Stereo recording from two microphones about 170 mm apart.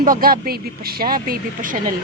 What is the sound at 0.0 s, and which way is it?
Speech, 55° right (ahead or behind).